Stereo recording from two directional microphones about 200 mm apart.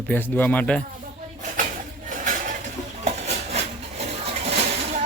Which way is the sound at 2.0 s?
40° right (ahead or behind).